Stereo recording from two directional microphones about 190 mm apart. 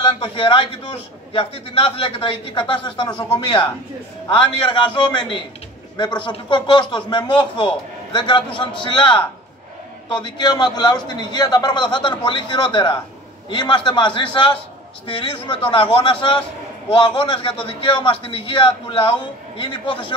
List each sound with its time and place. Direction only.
0.0 s a man's voice: 25° left (ahead or behind)
10.2 s a man's voice: 25° left (ahead or behind)